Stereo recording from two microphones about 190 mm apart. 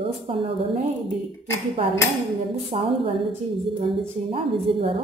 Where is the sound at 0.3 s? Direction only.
30° right (ahead or behind).